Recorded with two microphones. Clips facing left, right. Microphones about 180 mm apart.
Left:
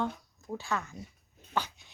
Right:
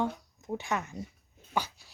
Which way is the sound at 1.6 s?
10° right (ahead or behind).